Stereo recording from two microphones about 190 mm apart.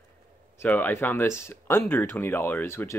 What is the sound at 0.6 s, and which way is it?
Speech, 10° left (ahead or behind).